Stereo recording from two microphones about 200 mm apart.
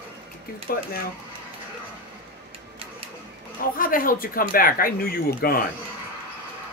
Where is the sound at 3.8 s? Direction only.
45° left (ahead or behind).